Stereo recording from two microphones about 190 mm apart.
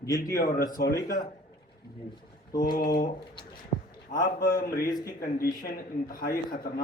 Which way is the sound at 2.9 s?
50° left (ahead or behind).